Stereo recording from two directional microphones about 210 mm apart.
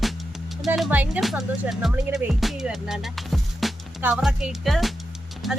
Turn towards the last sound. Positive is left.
turn(degrees=0)  # may be behind; listen again after turning